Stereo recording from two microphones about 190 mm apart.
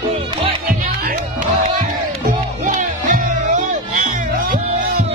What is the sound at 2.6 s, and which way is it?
Music, 45° right (ahead or behind).